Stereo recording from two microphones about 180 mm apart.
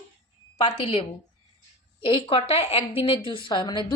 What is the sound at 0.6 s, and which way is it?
Speech, 30° left (ahead or behind).